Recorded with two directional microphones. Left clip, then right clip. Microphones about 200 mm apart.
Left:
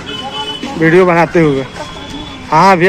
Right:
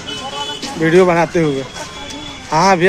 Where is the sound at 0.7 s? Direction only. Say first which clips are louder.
Left 3 dB; 10° right (ahead or behind).